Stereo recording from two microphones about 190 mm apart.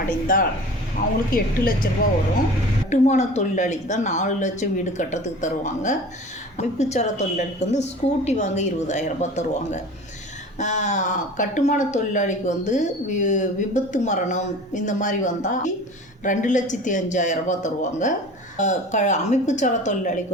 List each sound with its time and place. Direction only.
0.3 s a woman's voice: 45° left (ahead or behind)
2.9 s speech: 40° left (ahead or behind)